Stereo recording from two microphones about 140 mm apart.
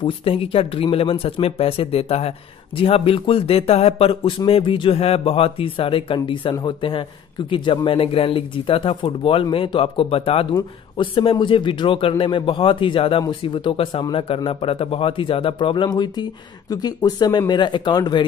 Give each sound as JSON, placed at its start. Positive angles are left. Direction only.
{"t": 0.0, "sound": "a man's voice", "side_deg": 45}